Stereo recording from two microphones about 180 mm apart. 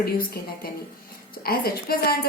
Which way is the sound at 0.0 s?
55° left (ahead or behind).